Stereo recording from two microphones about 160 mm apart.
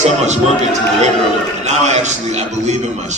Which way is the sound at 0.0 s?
45° right (ahead or behind).